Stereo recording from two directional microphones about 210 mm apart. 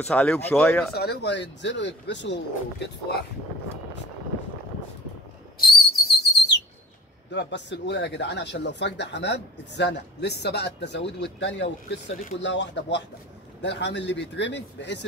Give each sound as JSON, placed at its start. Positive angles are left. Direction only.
{"t": 0.1, "sound": "speech", "side_deg": 5}
{"t": 0.9, "sound": "speech", "side_deg": 50}
{"t": 5.6, "sound": "whistle", "side_deg": 45}
{"t": 7.2, "sound": "speech", "side_deg": 55}